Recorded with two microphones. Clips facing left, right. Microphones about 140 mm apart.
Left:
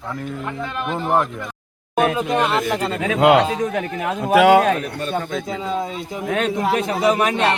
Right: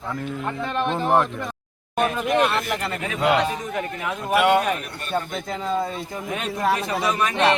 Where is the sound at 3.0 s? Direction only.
90° left.